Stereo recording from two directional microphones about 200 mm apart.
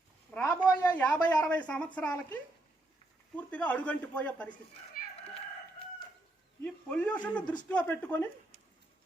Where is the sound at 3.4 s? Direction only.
5° left (ahead or behind).